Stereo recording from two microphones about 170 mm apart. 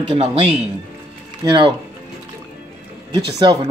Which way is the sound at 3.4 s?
25° right (ahead or behind).